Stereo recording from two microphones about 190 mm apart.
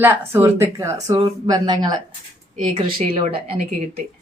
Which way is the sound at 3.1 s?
30° right (ahead or behind).